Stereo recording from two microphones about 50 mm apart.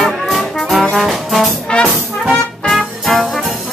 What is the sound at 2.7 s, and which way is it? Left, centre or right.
Music, centre.